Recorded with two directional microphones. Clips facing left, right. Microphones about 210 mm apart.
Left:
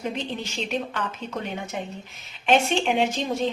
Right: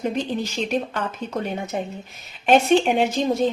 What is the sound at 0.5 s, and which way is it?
A woman's voice, 40° right (ahead or behind).